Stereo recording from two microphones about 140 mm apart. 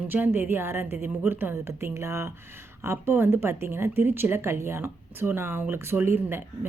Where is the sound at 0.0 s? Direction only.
15° right (ahead or behind).